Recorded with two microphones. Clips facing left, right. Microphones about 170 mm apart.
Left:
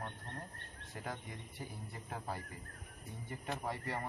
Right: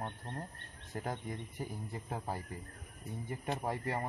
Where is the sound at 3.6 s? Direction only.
40° right (ahead or behind).